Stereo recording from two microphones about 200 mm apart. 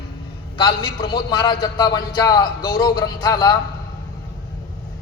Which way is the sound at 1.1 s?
20° left (ahead or behind).